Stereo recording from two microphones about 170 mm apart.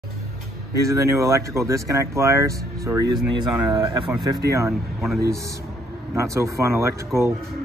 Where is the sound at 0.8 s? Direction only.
20° right (ahead or behind).